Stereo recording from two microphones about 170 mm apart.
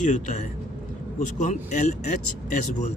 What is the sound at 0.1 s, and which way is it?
Speech, 45° left (ahead or behind).